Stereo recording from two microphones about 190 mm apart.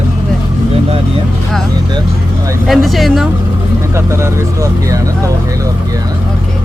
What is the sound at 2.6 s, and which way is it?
Speech, centre (ahead or behind).